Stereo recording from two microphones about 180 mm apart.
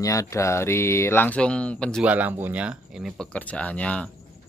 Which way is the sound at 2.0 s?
10° right (ahead or behind).